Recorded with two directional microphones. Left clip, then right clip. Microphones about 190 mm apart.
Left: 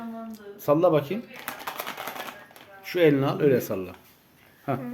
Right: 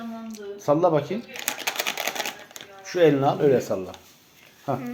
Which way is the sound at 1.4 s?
5° right (ahead or behind).